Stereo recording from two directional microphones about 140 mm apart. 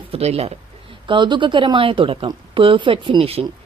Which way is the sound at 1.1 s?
35° right (ahead or behind).